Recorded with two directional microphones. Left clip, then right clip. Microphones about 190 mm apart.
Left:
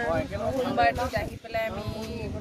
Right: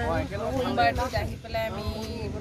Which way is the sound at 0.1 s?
40° left (ahead or behind).